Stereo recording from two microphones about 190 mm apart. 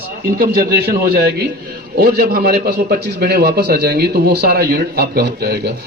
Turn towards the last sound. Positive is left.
turn(degrees=-60)  # may be behind; listen again after turning